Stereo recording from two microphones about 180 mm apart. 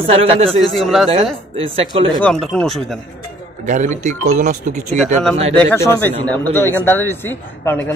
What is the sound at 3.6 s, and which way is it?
Speech, 45° right (ahead or behind).